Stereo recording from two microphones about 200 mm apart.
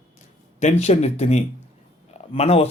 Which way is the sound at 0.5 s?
35° left (ahead or behind).